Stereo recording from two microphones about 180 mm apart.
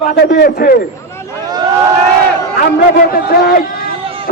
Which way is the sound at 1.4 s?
20° right (ahead or behind).